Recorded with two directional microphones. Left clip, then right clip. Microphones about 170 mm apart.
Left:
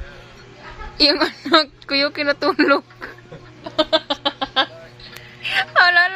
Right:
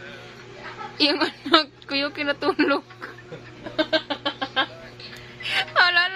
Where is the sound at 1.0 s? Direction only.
25° left (ahead or behind).